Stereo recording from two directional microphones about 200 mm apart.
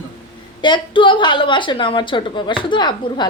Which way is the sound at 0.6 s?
20° left (ahead or behind).